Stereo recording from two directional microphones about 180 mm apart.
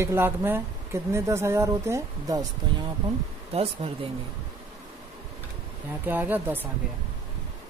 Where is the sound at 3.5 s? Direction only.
35° right (ahead or behind).